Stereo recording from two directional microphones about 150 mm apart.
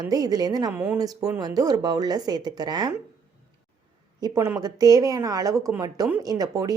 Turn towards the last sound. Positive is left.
turn(degrees=-25)  # may be behind; listen again after turning